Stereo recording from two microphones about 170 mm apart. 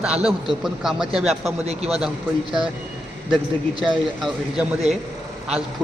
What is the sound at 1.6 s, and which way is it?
Speech, 40° right (ahead or behind).